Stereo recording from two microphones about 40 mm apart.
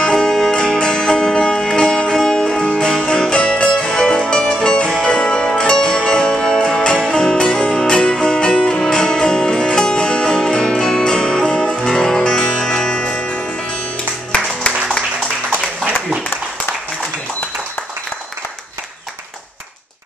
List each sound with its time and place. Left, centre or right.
0.0 s music: centre